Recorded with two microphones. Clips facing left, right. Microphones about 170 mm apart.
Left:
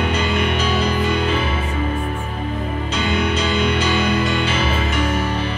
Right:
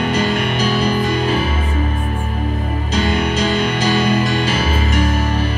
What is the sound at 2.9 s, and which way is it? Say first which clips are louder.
Music: right 3 dB; 40° right (ahead or behind).